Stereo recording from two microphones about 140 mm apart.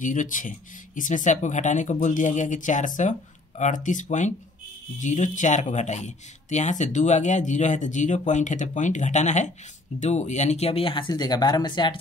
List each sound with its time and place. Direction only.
0.0 s speech: 65° left (ahead or behind); by 12.0 s 35° left (ahead or behind)